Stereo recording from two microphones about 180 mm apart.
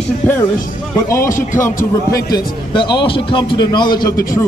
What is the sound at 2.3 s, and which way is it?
A man's voice, 25° left (ahead or behind).